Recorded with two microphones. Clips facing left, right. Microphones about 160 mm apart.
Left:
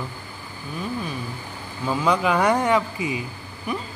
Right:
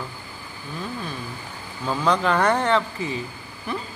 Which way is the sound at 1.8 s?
10° left (ahead or behind).